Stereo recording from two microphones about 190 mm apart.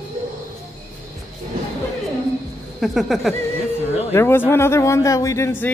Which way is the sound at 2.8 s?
Centre (ahead or behind).